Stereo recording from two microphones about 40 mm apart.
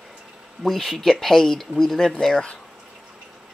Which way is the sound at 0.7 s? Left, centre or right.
Centre.